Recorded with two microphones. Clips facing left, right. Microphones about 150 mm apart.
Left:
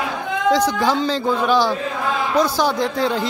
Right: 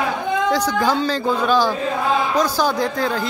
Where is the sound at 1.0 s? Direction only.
20° left (ahead or behind).